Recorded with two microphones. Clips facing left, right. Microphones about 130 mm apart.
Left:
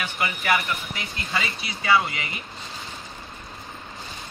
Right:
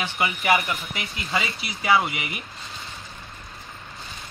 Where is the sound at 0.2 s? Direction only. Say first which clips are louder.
Right 2 dB; 15° right (ahead or behind).